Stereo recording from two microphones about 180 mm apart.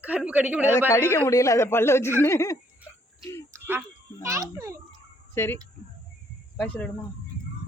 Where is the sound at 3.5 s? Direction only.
15° right (ahead or behind).